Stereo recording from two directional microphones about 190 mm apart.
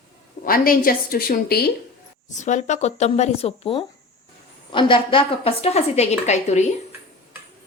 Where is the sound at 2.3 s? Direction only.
40° left (ahead or behind).